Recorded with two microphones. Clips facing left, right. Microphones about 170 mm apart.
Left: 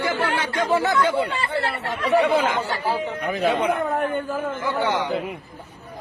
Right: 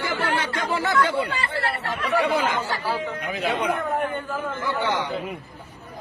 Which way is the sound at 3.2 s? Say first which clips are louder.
Left 5 dB; 50° left (ahead or behind).